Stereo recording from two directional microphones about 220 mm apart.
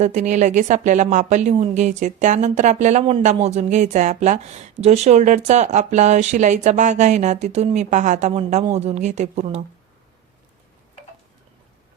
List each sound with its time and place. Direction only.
0.0 s a woman's voice: 30° right (ahead or behind)